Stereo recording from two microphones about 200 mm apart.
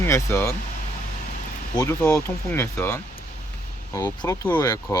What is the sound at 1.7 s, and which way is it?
Speech, 15° left (ahead or behind).